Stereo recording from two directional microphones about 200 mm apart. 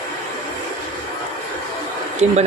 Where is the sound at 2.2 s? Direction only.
35° right (ahead or behind).